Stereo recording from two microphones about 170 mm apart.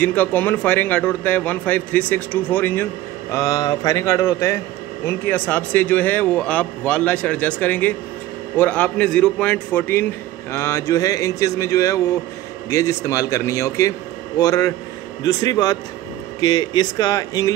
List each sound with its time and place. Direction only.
0.0 s a man's voice: 10° left (ahead or behind)